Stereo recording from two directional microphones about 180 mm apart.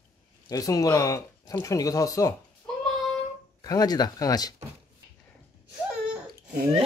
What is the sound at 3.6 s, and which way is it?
Speech, 20° left (ahead or behind).